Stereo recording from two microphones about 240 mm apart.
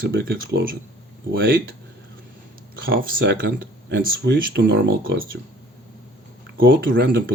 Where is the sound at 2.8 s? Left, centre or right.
Right.